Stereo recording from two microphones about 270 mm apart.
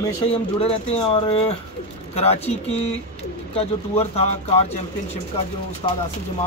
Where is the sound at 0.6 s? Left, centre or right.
Left.